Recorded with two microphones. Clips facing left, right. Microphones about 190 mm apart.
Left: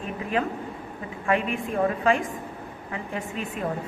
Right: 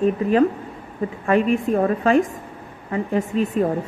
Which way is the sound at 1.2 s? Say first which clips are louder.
Right 7 dB; 40° right (ahead or behind).